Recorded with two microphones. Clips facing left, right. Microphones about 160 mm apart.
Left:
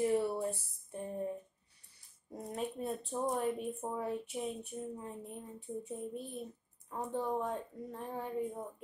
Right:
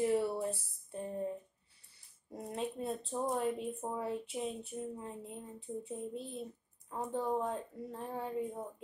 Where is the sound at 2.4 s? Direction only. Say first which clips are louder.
Even; 25° right (ahead or behind).